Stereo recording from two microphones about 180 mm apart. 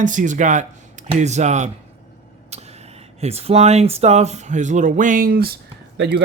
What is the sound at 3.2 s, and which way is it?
Speech, 35° right (ahead or behind).